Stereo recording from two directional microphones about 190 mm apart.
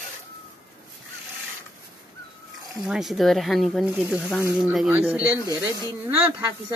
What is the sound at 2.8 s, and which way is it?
Speech, centre (ahead or behind).